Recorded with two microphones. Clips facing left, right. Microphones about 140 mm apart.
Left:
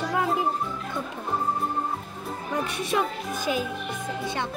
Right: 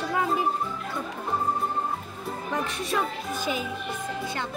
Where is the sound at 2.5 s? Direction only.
15° left (ahead or behind).